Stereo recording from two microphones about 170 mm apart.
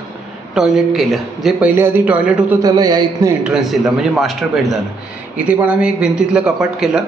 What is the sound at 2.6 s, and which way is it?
Speech, 20° right (ahead or behind).